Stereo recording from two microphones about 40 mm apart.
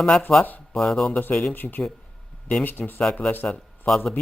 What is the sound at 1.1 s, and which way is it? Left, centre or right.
Speech, left.